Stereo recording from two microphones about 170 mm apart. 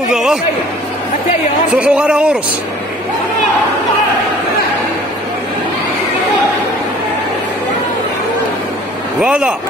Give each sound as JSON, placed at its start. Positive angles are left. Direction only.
{"t": 0.1, "sound": "a man's voice", "side_deg": -5}
{"t": 1.8, "sound": "speech", "side_deg": -5}
{"t": 9.2, "sound": "speech", "side_deg": -5}